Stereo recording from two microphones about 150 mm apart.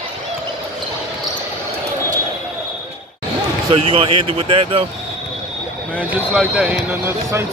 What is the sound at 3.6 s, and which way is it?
Speech, 40° right (ahead or behind).